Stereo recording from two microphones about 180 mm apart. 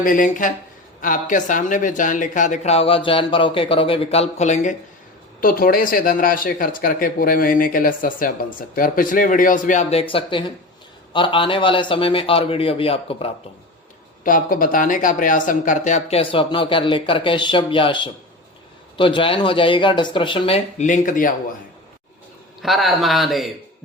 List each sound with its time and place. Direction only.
0.0 s speech: 50° left (ahead or behind)
5.4 s speech: 50° left (ahead or behind); by 13.3 s 30° left (ahead or behind)
14.3 s speech: 50° left (ahead or behind)
22.6 s a man's voice: centre (ahead or behind)